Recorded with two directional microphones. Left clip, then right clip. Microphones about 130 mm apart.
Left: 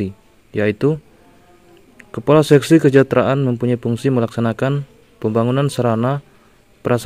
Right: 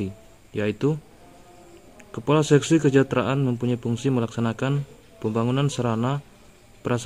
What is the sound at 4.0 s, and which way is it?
A man's voice, 35° left (ahead or behind).